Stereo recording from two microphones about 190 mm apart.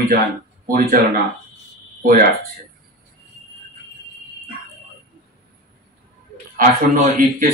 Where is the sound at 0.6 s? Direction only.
50° right (ahead or behind).